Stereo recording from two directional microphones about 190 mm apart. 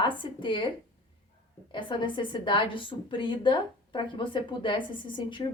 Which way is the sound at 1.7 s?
25° left (ahead or behind).